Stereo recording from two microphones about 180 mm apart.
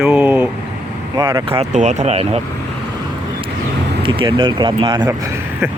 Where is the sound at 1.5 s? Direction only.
35° right (ahead or behind).